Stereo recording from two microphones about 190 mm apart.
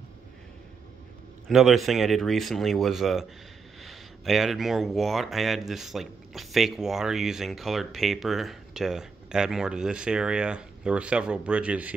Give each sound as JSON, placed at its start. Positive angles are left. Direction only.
{"t": 1.5, "sound": "speech", "side_deg": 0}